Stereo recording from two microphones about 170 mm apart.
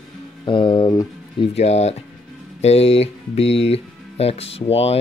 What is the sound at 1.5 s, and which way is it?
Speech, 40° left (ahead or behind).